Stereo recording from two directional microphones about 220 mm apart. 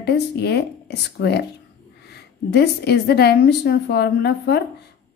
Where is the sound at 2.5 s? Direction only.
50° left (ahead or behind).